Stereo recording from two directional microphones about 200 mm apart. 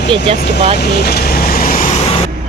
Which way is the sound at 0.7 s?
55° left (ahead or behind).